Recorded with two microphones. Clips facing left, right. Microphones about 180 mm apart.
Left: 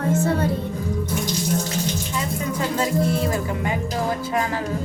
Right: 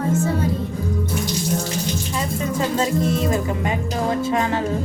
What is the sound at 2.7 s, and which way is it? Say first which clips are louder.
Music: left 1 dB; 20° right (ahead or behind).